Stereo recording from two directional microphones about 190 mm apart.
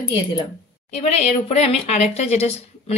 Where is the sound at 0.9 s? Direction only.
35° left (ahead or behind).